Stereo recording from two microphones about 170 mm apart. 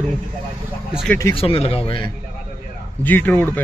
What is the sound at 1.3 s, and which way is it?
Speech, 35° left (ahead or behind).